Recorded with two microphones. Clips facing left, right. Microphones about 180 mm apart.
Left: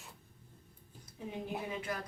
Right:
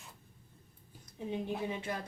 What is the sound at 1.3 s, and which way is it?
Speech, 25° right (ahead or behind).